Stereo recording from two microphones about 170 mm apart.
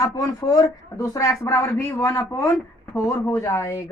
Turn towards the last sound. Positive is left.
turn(degrees=15)  # may be behind; listen again after turning